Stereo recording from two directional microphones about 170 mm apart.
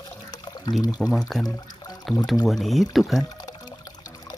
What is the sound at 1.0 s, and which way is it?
Speech, centre (ahead or behind).